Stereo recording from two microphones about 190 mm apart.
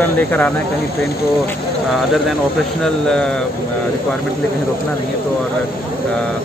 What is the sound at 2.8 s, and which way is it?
Speech, 5° left (ahead or behind).